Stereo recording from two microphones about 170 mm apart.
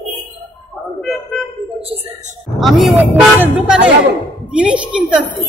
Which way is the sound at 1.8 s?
35° right (ahead or behind).